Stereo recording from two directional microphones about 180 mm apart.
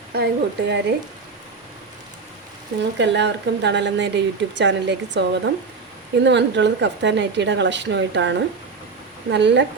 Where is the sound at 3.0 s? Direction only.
75° right (ahead or behind).